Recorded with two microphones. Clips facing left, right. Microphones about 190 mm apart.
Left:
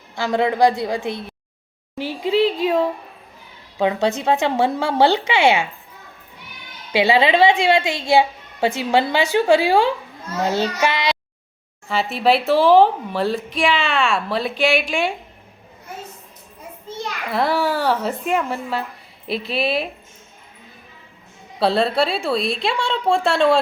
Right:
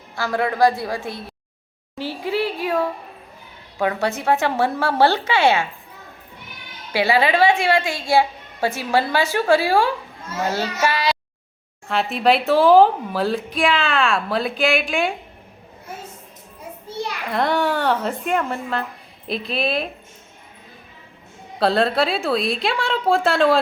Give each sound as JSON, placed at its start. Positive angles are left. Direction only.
{"t": 0.2, "sound": "a woman's voice", "side_deg": 20}
{"t": 2.0, "sound": "a sound", "side_deg": 20}
{"t": 3.8, "sound": "a woman's voice", "side_deg": 20}
{"t": 6.9, "sound": "a woman's voice", "side_deg": 20}
{"t": 11.9, "sound": "speech", "side_deg": 0}
{"t": 17.2, "sound": "speech", "side_deg": 5}
{"t": 21.6, "sound": "speech", "side_deg": 0}